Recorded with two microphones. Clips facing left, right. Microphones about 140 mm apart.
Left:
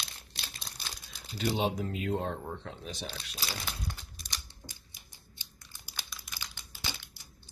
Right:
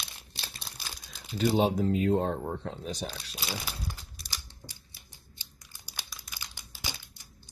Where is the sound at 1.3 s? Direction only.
40° right (ahead or behind).